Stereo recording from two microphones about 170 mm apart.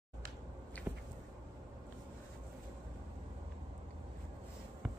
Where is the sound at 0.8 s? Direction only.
10° left (ahead or behind).